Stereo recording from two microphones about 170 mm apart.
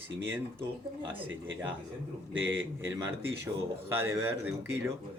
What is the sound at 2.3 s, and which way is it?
Speech, 90° right.